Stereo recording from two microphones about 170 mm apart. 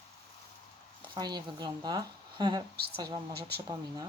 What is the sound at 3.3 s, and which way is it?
Speech, 70° right (ahead or behind).